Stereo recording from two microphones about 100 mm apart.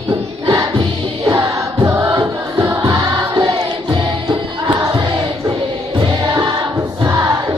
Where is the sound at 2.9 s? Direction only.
40° right (ahead or behind).